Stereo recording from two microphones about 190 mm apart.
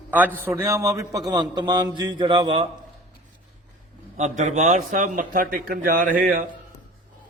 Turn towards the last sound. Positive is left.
turn(degrees=-45)  # may be behind; listen again after turning